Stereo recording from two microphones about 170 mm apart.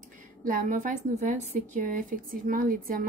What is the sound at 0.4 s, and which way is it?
A woman's voice, 50° right (ahead or behind).